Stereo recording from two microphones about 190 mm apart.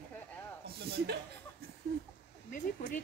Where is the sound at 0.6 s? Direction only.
55° right (ahead or behind).